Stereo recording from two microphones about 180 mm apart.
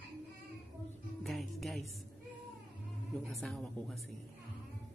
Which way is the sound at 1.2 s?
Centre (ahead or behind).